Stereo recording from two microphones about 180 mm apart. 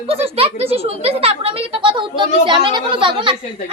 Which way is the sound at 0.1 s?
35° right (ahead or behind).